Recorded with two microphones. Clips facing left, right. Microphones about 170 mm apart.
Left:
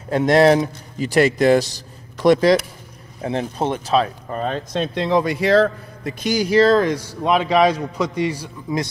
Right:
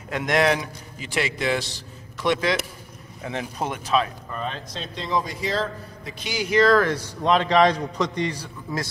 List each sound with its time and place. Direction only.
0.1 s a man's voice: 30° left (ahead or behind)
4.7 s a man's voice: 65° left (ahead or behind)
6.2 s a man's voice: 40° left (ahead or behind)
6.8 s a man's voice: 10° left (ahead or behind)